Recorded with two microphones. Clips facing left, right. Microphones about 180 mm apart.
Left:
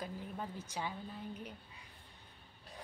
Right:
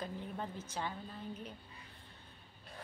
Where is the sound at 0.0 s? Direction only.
10° left (ahead or behind).